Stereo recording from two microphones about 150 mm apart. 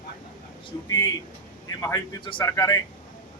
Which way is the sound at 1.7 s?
25° left (ahead or behind).